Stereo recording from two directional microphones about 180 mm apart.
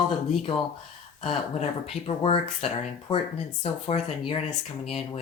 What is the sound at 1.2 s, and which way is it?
Speech, 35° left (ahead or behind).